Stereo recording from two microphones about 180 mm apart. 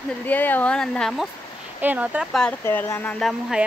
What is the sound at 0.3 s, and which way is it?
Speech, 10° left (ahead or behind).